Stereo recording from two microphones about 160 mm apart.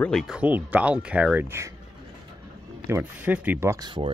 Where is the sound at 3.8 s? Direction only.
30° right (ahead or behind).